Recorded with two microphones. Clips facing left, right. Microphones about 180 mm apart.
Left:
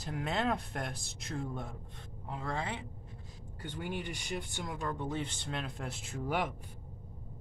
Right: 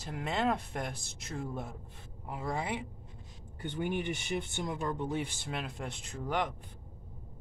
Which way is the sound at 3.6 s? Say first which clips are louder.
Right 5 dB; 20° right (ahead or behind).